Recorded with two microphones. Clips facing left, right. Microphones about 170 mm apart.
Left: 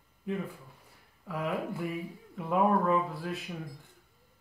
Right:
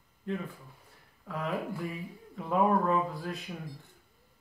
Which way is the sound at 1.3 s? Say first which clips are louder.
Left 1 dB; 10° left (ahead or behind).